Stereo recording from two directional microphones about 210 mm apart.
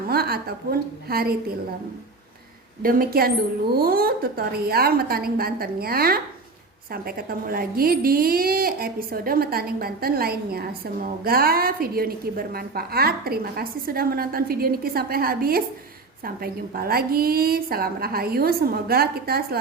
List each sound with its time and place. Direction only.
0.1 s speech: 45° right (ahead or behind)
2.8 s speech: 45° right (ahead or behind)